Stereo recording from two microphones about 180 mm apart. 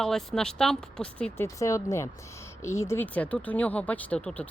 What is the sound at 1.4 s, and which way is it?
A woman's voice, 20° left (ahead or behind).